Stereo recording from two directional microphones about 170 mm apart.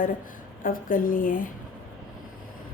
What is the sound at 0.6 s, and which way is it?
Speech, 55° left (ahead or behind).